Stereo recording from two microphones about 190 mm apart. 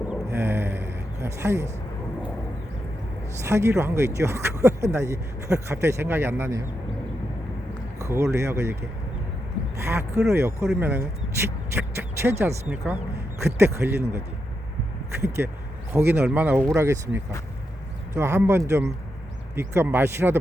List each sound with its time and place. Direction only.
0.1 s a sound: 10° right (ahead or behind)
3.4 s speech: 15° right (ahead or behind)
7.9 s speech: 15° right (ahead or behind)
9.8 s speech: 15° right (ahead or behind)
15.4 s a sound: 5° right (ahead or behind)
15.9 s speech: 15° right (ahead or behind)